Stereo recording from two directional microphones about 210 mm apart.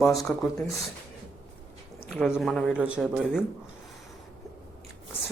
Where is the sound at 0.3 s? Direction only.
5° left (ahead or behind).